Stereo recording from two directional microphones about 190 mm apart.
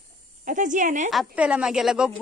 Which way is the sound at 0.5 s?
40° right (ahead or behind).